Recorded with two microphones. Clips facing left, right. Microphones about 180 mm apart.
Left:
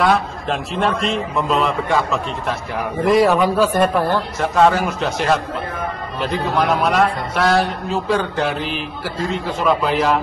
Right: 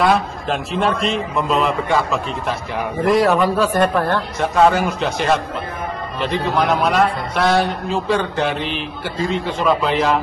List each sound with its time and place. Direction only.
0.0 s a man's voice: centre (ahead or behind)